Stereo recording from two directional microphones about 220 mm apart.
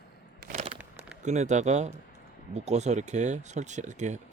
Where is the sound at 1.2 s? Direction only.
30° right (ahead or behind).